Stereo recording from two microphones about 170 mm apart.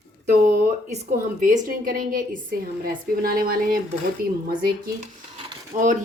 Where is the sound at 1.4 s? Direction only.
50° right (ahead or behind).